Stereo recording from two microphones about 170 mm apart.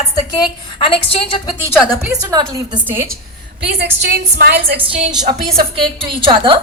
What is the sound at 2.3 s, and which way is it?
Speech, 20° right (ahead or behind).